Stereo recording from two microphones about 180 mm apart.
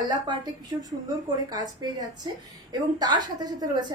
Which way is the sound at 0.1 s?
20° right (ahead or behind).